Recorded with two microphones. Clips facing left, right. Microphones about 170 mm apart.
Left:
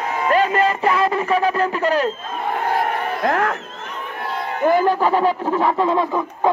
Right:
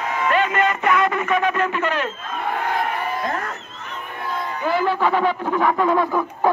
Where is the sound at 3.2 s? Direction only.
65° left (ahead or behind).